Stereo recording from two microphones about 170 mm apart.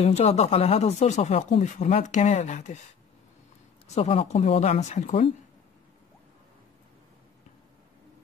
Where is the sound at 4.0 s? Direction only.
35° left (ahead or behind).